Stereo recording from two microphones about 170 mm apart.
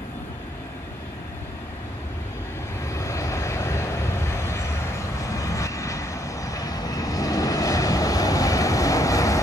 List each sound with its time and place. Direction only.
2.9 s vehicle: 20° left (ahead or behind)